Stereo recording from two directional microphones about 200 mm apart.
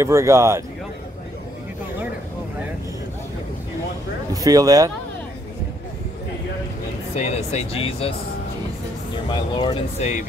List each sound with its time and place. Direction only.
0.0 s speech: 15° right (ahead or behind)
4.3 s speech: 15° right (ahead or behind)
7.2 s speech: 35° left (ahead or behind)
9.3 s speech: 20° left (ahead or behind)
9.9 s speech: 35° left (ahead or behind)